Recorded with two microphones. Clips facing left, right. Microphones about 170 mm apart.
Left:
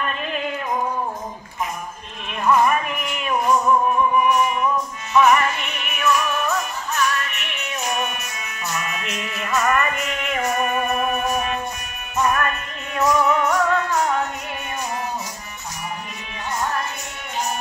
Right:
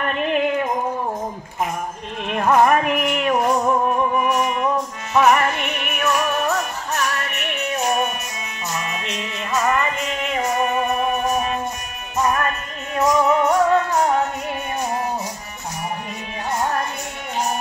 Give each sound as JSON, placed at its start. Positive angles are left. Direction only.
{"t": 0.0, "sound": "music", "side_deg": -65}
{"t": 2.2, "sound": "music", "side_deg": -60}
{"t": 16.4, "sound": "music", "side_deg": -35}